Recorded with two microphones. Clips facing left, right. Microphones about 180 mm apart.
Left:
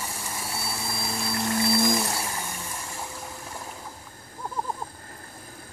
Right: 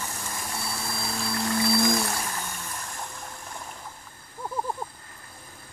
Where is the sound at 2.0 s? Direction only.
10° left (ahead or behind).